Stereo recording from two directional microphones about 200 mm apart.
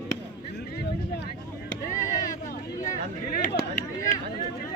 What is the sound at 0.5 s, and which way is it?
Vehicle, 55° left (ahead or behind).